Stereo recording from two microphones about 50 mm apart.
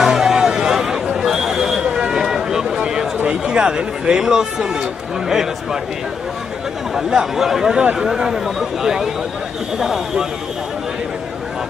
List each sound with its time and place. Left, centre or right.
0.0 s a sound: centre
3.3 s speech: centre
7.0 s speech: centre